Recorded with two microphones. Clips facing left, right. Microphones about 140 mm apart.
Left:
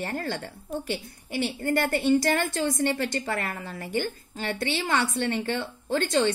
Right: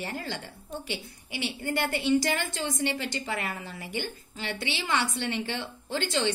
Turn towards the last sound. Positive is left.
turn(degrees=50)  # may be behind; listen again after turning